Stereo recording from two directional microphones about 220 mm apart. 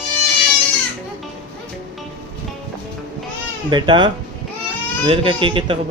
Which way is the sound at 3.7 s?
20° right (ahead or behind).